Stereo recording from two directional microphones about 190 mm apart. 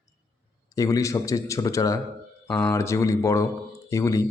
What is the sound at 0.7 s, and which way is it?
Speech, 15° left (ahead or behind).